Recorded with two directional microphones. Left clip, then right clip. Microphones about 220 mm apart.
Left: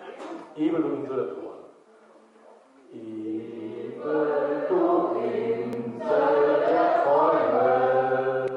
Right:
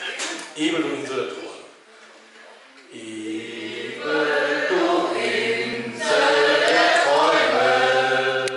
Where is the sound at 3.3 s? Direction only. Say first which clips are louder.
Right 4 dB; 10° left (ahead or behind).